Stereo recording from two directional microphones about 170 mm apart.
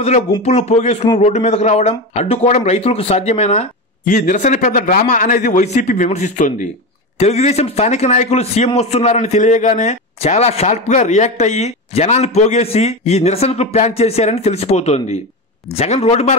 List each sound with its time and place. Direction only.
0.0 s a man's voice: 40° left (ahead or behind)